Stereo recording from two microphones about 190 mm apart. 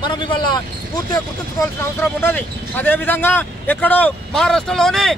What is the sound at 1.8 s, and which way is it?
Speech, 10° left (ahead or behind).